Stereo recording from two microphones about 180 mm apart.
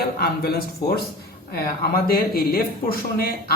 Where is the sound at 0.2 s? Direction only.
60° left (ahead or behind).